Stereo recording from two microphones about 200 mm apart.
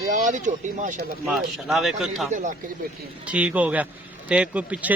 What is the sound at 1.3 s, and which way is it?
Speech, centre (ahead or behind).